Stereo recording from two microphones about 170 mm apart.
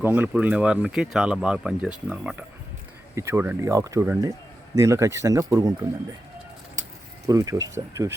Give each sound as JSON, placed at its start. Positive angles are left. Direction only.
{"t": 0.0, "sound": "speech", "side_deg": -10}
{"t": 7.3, "sound": "speech", "side_deg": -20}